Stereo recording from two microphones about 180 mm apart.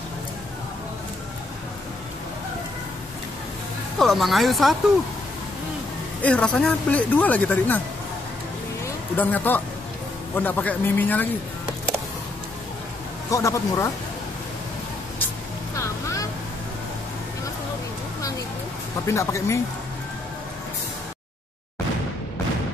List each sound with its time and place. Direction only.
4.0 s speech: centre (ahead or behind)
6.2 s speech: 5° left (ahead or behind)
9.1 s speech: 10° left (ahead or behind)
13.3 s speech: 15° left (ahead or behind)
15.7 s music: 15° left (ahead or behind)
19.0 s speech: 15° left (ahead or behind)